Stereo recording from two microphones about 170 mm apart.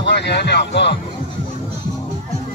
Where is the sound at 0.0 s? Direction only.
90° left.